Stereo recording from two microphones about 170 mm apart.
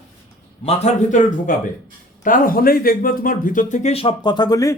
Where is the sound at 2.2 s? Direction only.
55° left (ahead or behind); by 4.7 s 20° left (ahead or behind).